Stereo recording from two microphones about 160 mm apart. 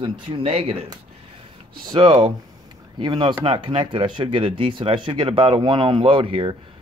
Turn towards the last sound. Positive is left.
turn(degrees=-35)  # may be behind; listen again after turning